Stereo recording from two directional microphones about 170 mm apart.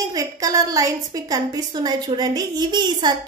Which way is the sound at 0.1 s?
20° right (ahead or behind).